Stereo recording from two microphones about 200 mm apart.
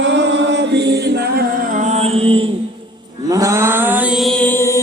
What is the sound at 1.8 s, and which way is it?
Mantra, 30° right (ahead or behind).